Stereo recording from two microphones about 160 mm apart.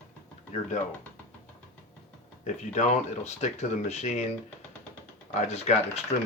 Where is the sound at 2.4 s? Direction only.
45° left (ahead or behind).